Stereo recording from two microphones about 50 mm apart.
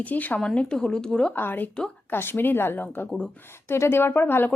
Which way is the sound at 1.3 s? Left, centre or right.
Left.